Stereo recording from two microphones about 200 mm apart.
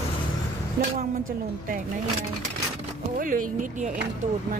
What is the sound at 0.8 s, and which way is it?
Speech, 50° right (ahead or behind).